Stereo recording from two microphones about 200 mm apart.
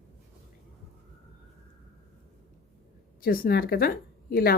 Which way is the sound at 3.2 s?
45° left (ahead or behind).